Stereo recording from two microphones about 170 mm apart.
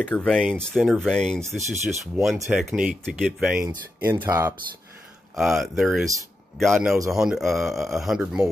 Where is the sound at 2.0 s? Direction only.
Centre (ahead or behind).